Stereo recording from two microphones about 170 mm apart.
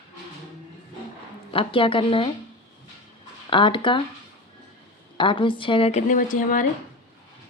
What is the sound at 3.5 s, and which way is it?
Speech, 30° left (ahead or behind).